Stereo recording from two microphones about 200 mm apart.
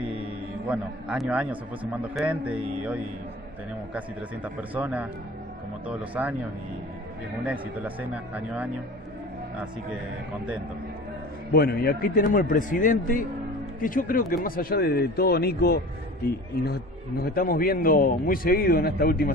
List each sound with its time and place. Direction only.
0.7 s a man's voice: 5° right (ahead or behind)
3.9 s speech: 5° right (ahead or behind)
7.8 s speech: 10° right (ahead or behind)
11.5 s a man's voice: 50° left (ahead or behind)
17.2 s a man's voice: 45° left (ahead or behind)